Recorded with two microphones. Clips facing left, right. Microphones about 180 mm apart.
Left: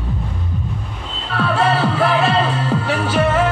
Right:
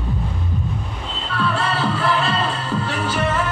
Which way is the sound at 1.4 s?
60° left (ahead or behind).